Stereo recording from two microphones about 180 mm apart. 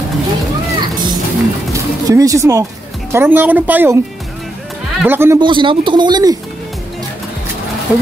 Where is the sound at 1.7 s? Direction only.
20° right (ahead or behind).